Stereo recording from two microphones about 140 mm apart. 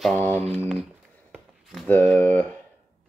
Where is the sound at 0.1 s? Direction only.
15° left (ahead or behind).